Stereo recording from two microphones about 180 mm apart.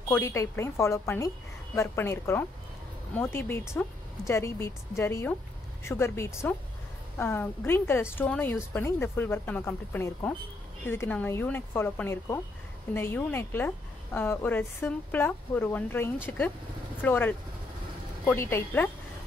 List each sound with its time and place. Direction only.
0.1 s a woman's voice: 15° left (ahead or behind)